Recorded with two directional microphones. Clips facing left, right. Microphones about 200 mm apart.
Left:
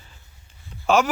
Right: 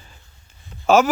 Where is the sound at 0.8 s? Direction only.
40° right (ahead or behind).